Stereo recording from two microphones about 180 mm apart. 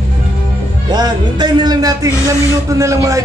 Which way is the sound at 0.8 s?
20° right (ahead or behind).